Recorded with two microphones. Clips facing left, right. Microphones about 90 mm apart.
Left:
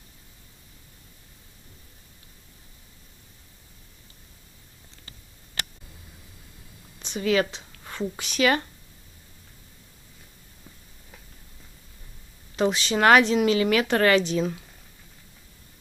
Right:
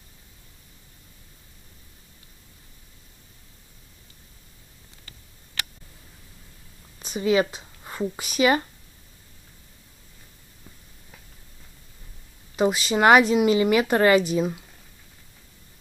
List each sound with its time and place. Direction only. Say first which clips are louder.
7.2 s speech: right 2 dB; 15° right (ahead or behind)
12.5 s speech: right 2 dB; 5° right (ahead or behind)